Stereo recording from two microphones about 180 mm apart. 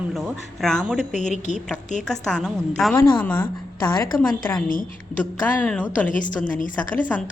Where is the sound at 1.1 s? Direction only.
40° left (ahead or behind).